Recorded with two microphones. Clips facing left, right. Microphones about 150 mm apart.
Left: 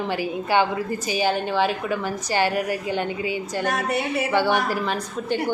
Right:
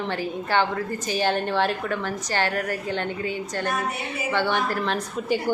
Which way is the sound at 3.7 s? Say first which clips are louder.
Left 6 dB; 85° left.